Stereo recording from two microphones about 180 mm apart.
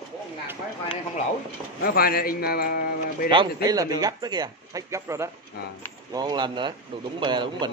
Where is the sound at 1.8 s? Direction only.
55° left (ahead or behind).